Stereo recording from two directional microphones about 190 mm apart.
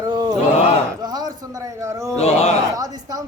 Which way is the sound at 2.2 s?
30° left (ahead or behind).